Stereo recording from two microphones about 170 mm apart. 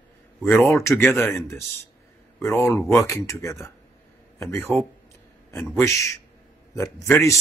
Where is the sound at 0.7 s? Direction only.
15° left (ahead or behind).